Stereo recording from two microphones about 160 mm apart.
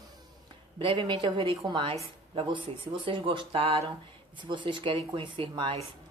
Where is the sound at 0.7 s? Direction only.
30° right (ahead or behind).